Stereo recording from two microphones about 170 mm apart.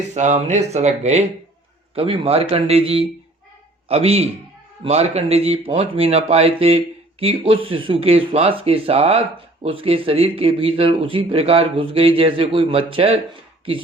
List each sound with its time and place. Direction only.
0.1 s speech: 40° right (ahead or behind)